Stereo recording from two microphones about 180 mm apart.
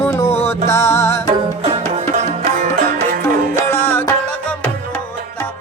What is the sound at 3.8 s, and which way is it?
Music, 10° left (ahead or behind).